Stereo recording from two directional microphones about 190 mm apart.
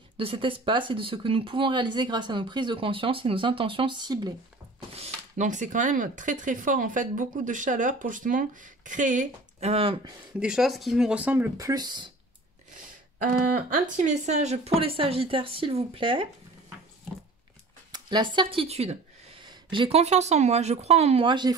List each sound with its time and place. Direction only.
0.2 s speech: 30° right (ahead or behind)
4.9 s speech: 35° right (ahead or behind)
10.4 s speech: centre (ahead or behind); by 12.1 s 20° right (ahead or behind)
13.7 s speech: 40° right (ahead or behind)
17.9 s speech: 25° right (ahead or behind)